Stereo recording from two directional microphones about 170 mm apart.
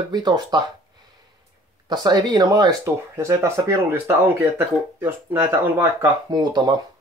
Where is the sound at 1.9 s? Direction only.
25° right (ahead or behind).